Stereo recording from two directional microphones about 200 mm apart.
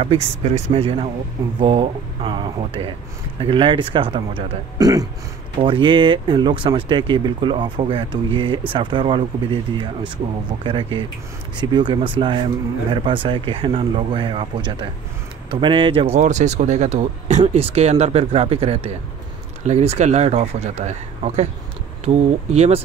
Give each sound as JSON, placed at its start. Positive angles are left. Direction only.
{"t": 0.0, "sound": "speech", "side_deg": -30}